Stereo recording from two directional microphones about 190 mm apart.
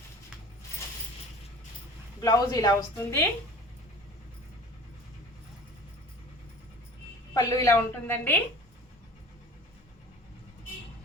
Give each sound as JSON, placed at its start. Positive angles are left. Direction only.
{"t": 2.2, "sound": "a woman's voice", "side_deg": 20}
{"t": 7.3, "sound": "a woman's voice", "side_deg": 15}